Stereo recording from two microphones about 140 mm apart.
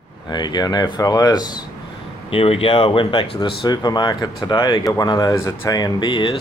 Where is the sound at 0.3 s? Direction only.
30° left (ahead or behind).